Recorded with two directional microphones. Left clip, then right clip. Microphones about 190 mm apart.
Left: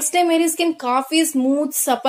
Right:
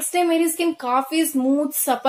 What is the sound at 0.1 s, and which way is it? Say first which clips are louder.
A woman's voice: left 2 dB; 25° left (ahead or behind).